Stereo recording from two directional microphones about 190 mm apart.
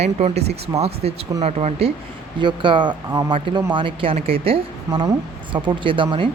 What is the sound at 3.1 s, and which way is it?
Speech, 10° right (ahead or behind).